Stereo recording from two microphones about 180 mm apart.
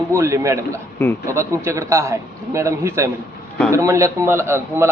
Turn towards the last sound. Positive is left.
turn(degrees=-15)  # may be behind; listen again after turning